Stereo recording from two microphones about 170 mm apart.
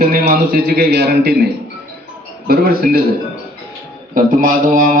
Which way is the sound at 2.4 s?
65° right (ahead or behind).